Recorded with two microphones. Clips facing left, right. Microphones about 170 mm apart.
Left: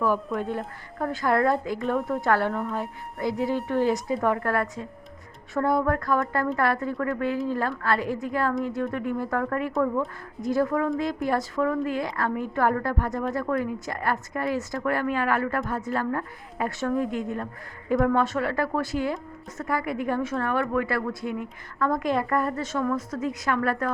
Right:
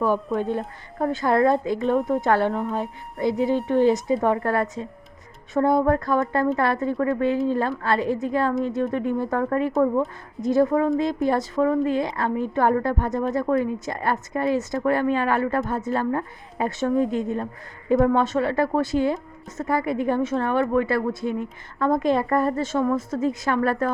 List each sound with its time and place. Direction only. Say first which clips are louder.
0.9 s speech: right 3 dB; 20° right (ahead or behind)